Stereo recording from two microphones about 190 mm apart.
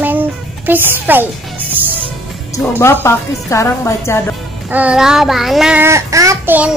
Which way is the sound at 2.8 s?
10° left (ahead or behind).